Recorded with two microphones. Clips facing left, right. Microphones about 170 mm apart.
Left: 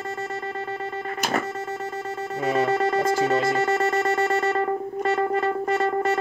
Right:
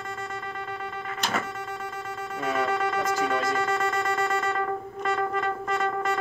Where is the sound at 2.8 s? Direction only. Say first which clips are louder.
Left 5 dB; 30° left (ahead or behind).